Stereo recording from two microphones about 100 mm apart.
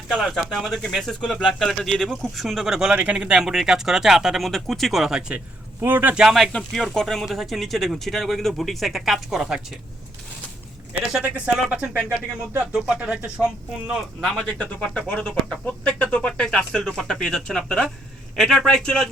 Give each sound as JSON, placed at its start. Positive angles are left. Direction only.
{"t": 0.1, "sound": "speech", "side_deg": 0}
{"t": 5.8, "sound": "speech", "side_deg": -20}
{"t": 6.2, "sound": "speech", "side_deg": 0}
{"t": 11.2, "sound": "speech", "side_deg": -10}
{"t": 14.2, "sound": "speech", "side_deg": 5}